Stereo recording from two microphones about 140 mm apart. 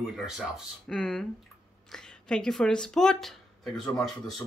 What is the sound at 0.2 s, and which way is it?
Speech, centre (ahead or behind).